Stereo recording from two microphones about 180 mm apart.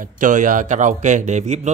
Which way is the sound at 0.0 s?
45° right (ahead or behind).